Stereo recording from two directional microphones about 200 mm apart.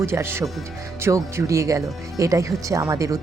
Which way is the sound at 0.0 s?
10° right (ahead or behind).